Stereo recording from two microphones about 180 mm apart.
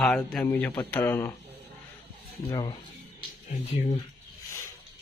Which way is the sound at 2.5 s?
25° left (ahead or behind).